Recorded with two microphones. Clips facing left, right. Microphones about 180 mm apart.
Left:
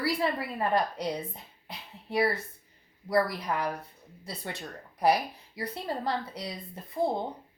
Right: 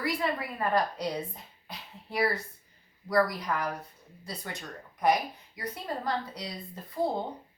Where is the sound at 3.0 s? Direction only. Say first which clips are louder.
Even; 25° left (ahead or behind).